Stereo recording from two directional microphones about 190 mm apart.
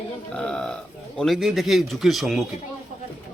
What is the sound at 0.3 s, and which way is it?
A man's voice, 5° left (ahead or behind).